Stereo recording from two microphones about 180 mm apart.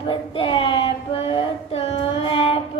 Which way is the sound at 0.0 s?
25° left (ahead or behind).